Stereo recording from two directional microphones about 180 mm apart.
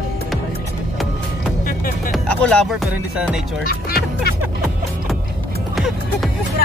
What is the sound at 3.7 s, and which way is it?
Speech, 55° left (ahead or behind).